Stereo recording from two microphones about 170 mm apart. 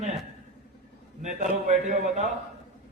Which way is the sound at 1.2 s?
45° right (ahead or behind).